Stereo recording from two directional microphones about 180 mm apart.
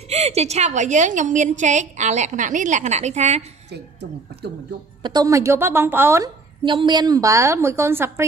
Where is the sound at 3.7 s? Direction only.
70° right (ahead or behind).